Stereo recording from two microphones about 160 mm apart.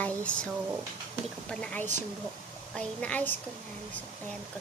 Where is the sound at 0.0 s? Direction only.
10° left (ahead or behind).